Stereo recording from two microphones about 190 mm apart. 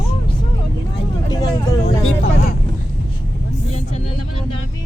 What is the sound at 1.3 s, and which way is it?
Speech, 20° left (ahead or behind).